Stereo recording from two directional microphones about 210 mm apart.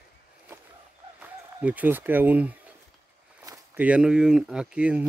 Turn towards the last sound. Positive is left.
turn(degrees=-5)  # may be behind; listen again after turning